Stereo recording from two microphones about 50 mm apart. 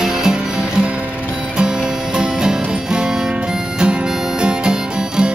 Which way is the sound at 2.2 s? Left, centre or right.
Centre.